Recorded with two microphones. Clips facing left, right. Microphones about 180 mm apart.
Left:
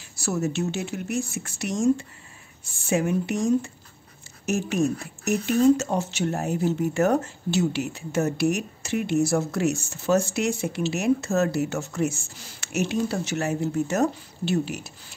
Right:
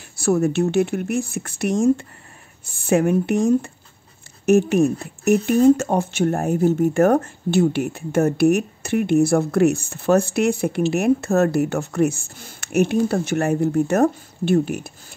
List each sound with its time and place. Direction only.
0.1 s speech: 55° right (ahead or behind)